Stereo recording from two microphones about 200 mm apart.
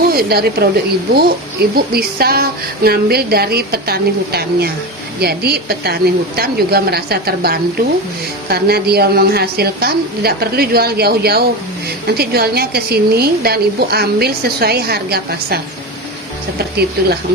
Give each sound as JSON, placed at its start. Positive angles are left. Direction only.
{"t": 0.1, "sound": "a woman's voice", "side_deg": -50}
{"t": 1.7, "sound": "a woman's voice", "side_deg": -50}